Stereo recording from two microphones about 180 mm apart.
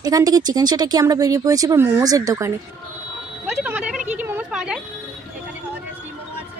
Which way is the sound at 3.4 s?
5° right (ahead or behind).